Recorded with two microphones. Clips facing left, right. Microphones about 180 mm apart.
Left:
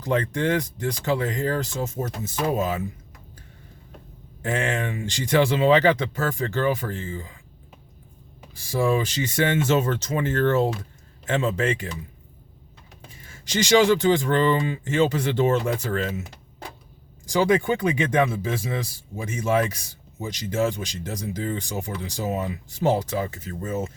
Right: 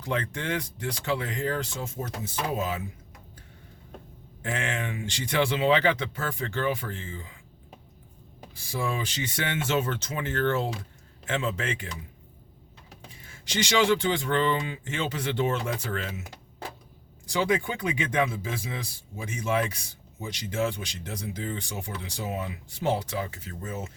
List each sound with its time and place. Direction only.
0.0 s speech: 40° left (ahead or behind)
4.4 s speech: 40° left (ahead or behind)
8.7 s speech: 45° left (ahead or behind)
13.4 s speech: 45° left (ahead or behind)
17.2 s speech: 40° left (ahead or behind)